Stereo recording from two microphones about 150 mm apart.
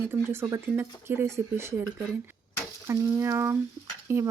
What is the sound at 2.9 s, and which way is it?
Speech, 20° right (ahead or behind).